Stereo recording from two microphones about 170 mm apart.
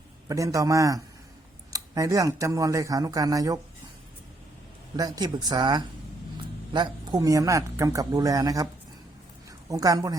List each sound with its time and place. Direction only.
0.3 s speech: 20° right (ahead or behind)
4.9 s speech: 20° right (ahead or behind)
9.6 s speech: 20° right (ahead or behind)